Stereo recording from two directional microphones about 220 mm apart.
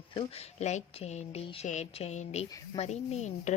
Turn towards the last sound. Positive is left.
turn(degrees=30)  # may be behind; listen again after turning